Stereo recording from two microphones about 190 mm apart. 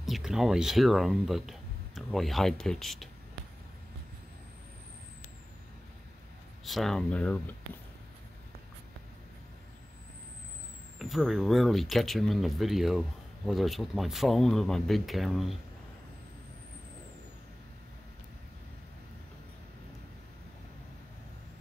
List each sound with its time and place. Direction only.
0.0 s speech: centre (ahead or behind)
6.6 s speech: centre (ahead or behind)
11.0 s speech: centre (ahead or behind)